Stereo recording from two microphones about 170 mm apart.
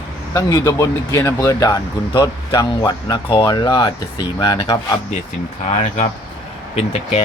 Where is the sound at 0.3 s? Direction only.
15° left (ahead or behind).